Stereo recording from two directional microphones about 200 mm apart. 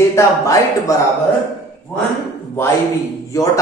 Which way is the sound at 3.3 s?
15° left (ahead or behind).